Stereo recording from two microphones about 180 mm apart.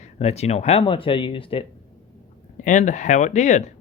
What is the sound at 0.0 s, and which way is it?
Speech, 35° left (ahead or behind).